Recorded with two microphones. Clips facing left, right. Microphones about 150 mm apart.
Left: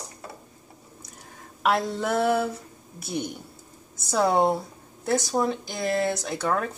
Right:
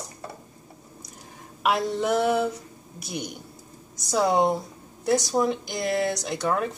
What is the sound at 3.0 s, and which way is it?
Speech, 25° left (ahead or behind).